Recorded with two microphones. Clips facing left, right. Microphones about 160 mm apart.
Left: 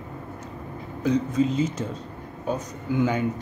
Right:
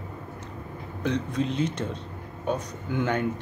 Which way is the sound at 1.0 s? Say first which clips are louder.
Left 5 dB; 5° left (ahead or behind).